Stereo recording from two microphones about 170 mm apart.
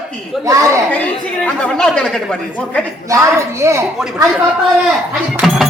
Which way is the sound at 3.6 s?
15° right (ahead or behind).